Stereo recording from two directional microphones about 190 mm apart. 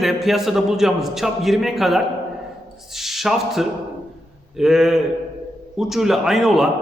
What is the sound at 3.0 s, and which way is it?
A man's voice, centre (ahead or behind).